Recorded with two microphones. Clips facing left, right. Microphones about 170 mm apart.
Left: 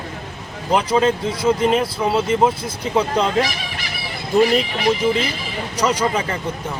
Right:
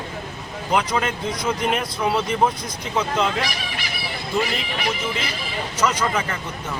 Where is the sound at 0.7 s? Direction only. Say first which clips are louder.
Left 5 dB; 30° left (ahead or behind).